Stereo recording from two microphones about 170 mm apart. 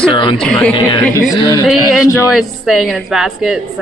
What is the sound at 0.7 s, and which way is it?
Speech, 25° left (ahead or behind).